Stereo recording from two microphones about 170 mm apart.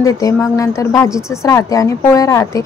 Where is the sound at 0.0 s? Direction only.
20° left (ahead or behind).